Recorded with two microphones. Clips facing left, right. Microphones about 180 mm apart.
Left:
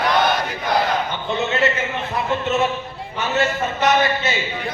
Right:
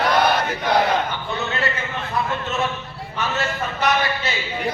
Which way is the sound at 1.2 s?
25° left (ahead or behind).